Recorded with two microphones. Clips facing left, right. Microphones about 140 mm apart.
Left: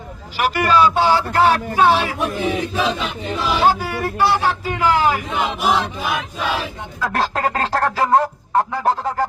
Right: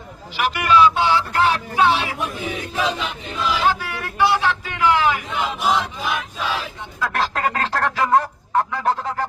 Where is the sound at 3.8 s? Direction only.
40° left (ahead or behind).